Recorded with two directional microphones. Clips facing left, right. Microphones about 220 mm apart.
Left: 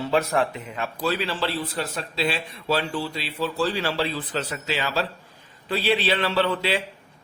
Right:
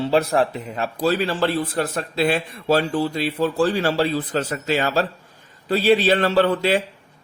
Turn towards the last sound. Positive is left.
turn(degrees=-45)  # may be behind; listen again after turning